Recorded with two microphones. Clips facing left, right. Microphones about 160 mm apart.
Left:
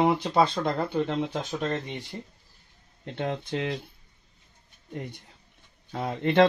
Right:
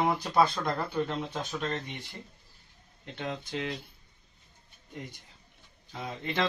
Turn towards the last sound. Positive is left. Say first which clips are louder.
# left 11 dB
turn(degrees=60)  # may be behind; listen again after turning